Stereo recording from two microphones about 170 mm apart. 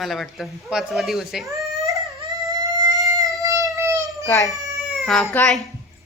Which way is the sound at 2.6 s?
20° right (ahead or behind).